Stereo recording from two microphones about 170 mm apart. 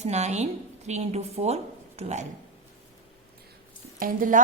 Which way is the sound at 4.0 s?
55° right (ahead or behind).